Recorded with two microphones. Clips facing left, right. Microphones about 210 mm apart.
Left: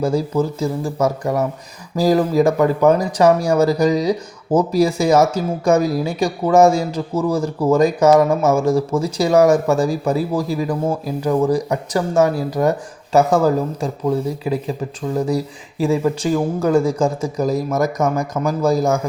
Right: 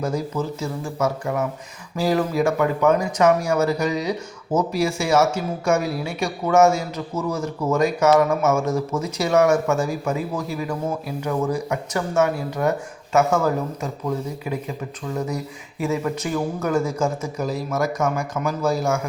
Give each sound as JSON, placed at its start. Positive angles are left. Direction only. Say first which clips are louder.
{"t": 0.0, "sound": "speech", "louder": "left 6 dB", "side_deg": 35}